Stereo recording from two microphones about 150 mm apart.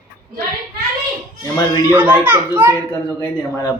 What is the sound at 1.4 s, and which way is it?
Speech, 20° left (ahead or behind).